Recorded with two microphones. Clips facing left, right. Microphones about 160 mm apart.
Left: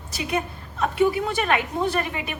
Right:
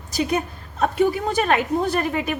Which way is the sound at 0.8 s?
40° right (ahead or behind).